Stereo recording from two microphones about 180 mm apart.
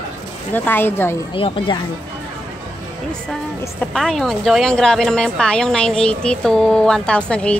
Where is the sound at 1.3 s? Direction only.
30° left (ahead or behind).